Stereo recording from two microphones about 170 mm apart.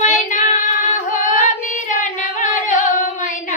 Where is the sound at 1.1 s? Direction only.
45° left (ahead or behind).